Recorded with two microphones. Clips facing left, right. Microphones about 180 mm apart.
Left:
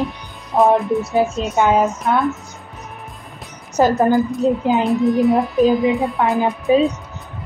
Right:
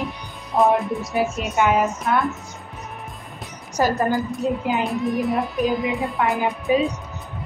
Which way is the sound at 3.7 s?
20° left (ahead or behind).